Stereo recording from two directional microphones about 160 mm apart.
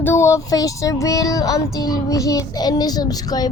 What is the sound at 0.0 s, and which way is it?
A child's voice, 15° left (ahead or behind).